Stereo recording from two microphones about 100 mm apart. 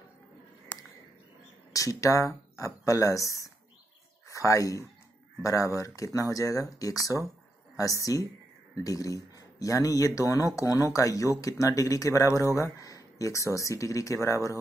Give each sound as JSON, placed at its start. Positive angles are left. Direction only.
{"t": 1.7, "sound": "speech", "side_deg": 35}